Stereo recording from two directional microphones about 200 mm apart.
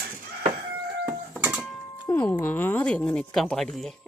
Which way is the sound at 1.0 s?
5° right (ahead or behind).